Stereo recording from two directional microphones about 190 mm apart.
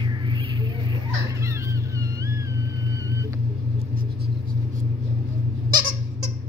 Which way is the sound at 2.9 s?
15° right (ahead or behind).